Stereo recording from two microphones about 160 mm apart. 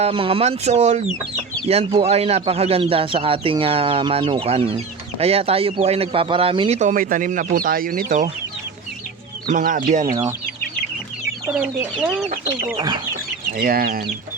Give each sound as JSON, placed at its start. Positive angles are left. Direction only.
{"t": 0.0, "sound": "speech", "side_deg": -35}
{"t": 9.5, "sound": "speech", "side_deg": -55}
{"t": 11.5, "sound": "speech", "side_deg": -10}
{"t": 13.6, "sound": "speech", "side_deg": -65}